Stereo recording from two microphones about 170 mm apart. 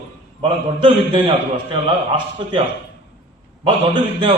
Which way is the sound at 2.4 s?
25° right (ahead or behind).